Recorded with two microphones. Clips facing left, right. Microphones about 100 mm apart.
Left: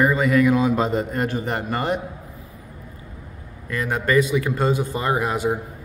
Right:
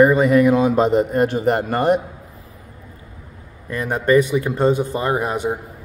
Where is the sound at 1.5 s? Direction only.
40° right (ahead or behind).